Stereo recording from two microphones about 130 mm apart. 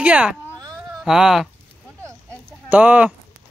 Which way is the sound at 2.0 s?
20° right (ahead or behind).